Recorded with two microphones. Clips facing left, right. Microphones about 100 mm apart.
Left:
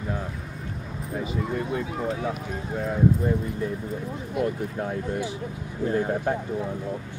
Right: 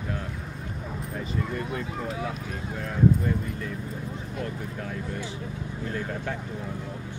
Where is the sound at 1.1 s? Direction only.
10° left (ahead or behind).